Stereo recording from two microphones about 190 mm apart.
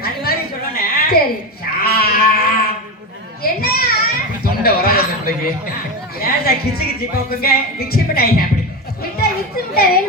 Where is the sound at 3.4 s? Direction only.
50° left (ahead or behind).